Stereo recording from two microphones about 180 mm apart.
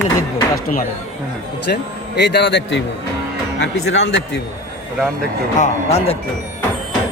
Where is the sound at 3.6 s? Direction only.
90° left.